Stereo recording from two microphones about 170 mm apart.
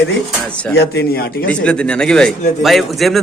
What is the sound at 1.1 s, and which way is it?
Speech, 65° left (ahead or behind).